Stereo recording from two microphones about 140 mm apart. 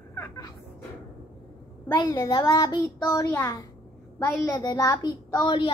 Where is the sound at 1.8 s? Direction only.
25° left (ahead or behind).